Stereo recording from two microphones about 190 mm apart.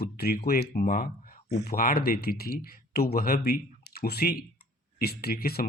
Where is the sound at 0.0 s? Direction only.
55° left (ahead or behind).